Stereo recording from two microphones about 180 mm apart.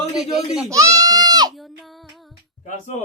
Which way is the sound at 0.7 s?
15° right (ahead or behind).